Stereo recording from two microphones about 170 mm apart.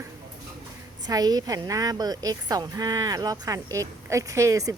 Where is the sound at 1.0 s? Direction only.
25° right (ahead or behind).